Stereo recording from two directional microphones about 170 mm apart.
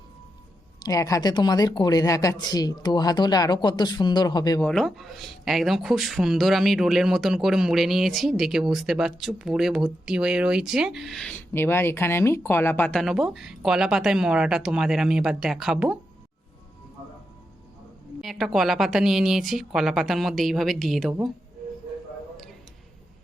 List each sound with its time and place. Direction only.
0.8 s speech: 20° left (ahead or behind)
4.6 s speech: 5° left (ahead or behind)
18.2 s speech: centre (ahead or behind)